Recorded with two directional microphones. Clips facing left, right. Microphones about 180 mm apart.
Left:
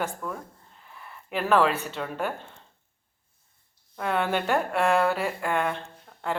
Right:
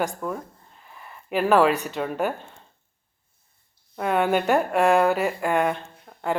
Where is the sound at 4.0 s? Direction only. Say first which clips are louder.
Right 5 dB; 15° right (ahead or behind).